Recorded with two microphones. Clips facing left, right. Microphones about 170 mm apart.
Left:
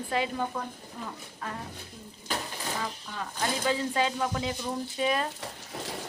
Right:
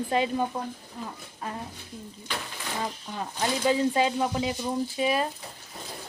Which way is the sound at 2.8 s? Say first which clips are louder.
Right 3 dB; 25° right (ahead or behind).